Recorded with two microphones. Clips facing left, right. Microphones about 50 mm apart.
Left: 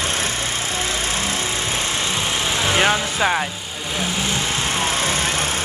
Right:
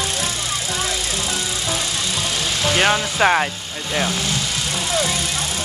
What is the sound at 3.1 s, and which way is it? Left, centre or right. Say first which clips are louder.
Speech: right 3 dB; centre.